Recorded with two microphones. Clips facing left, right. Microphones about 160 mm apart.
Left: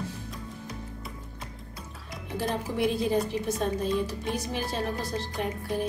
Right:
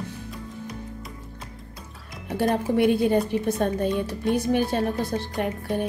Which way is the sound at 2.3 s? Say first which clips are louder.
Right 8 dB; 65° right (ahead or behind).